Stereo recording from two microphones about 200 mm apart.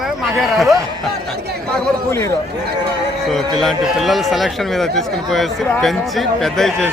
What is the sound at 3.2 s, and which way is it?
Speech, centre (ahead or behind).